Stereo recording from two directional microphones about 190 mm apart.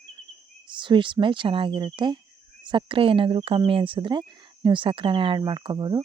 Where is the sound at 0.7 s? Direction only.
25° right (ahead or behind).